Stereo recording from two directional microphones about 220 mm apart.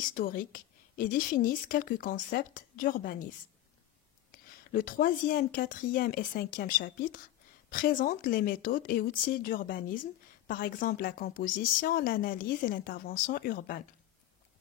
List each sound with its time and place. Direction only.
0.1 s speech: 40° left (ahead or behind)
4.3 s speech: 40° left (ahead or behind)